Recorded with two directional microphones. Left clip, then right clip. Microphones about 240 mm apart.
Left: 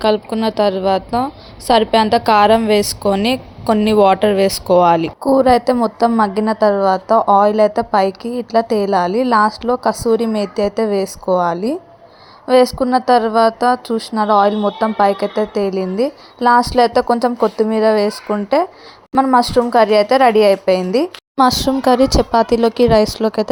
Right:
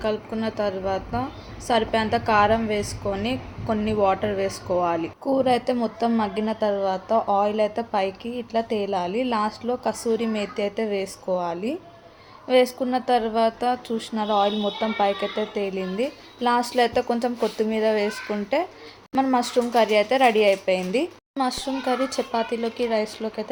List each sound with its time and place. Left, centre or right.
0.0 s a woman's voice: left